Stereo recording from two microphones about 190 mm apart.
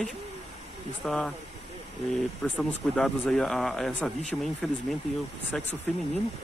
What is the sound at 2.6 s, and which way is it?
Speech, 5° left (ahead or behind).